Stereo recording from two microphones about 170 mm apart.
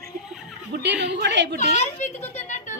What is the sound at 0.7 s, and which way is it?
Speech, 85° right.